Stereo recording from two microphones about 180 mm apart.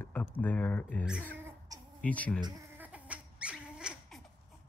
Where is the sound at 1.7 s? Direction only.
20° right (ahead or behind).